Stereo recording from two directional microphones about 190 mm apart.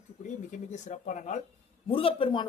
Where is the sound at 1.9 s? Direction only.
30° left (ahead or behind).